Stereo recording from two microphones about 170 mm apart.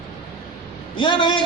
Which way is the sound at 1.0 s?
30° left (ahead or behind).